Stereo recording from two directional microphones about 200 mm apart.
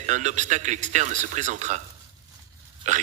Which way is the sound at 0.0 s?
35° right (ahead or behind).